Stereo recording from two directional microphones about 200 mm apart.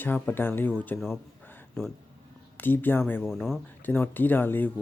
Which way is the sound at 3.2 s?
Centre (ahead or behind).